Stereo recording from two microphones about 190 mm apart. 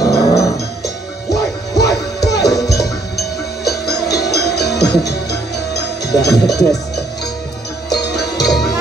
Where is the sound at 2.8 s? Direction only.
60° left (ahead or behind).